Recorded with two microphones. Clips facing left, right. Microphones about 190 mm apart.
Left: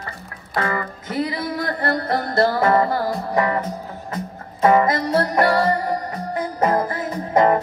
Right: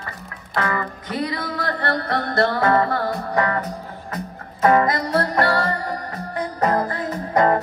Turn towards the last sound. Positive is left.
turn(degrees=25)  # may be behind; listen again after turning